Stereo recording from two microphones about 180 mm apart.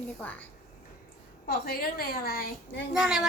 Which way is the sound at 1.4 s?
60° left (ahead or behind).